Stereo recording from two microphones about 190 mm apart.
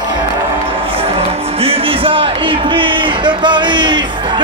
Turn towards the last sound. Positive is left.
turn(degrees=-25)  # may be behind; listen again after turning